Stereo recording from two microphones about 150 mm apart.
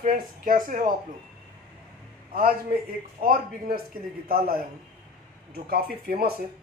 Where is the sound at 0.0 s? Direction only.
65° right (ahead or behind).